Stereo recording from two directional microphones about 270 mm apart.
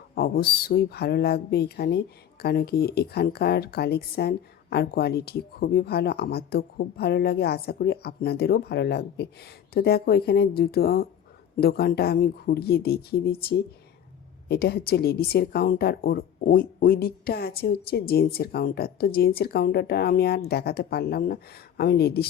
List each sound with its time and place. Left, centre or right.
0.2 s speech: left